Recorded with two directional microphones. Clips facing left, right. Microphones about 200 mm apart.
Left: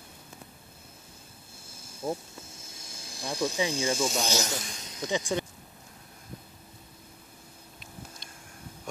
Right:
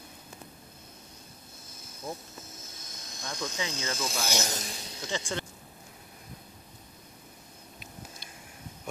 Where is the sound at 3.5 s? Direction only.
15° left (ahead or behind).